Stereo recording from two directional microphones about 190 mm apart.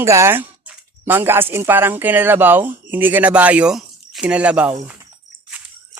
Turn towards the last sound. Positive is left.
turn(degrees=-5)  # may be behind; listen again after turning